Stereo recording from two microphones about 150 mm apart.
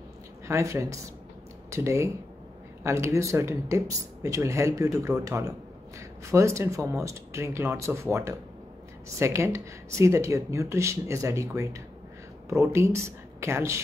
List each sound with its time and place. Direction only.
0.5 s a woman's voice: 20° right (ahead or behind)